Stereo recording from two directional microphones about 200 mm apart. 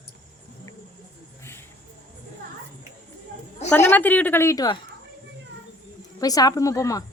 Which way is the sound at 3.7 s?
10° left (ahead or behind).